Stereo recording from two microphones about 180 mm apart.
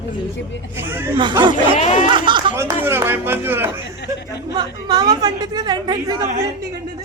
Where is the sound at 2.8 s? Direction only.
10° right (ahead or behind).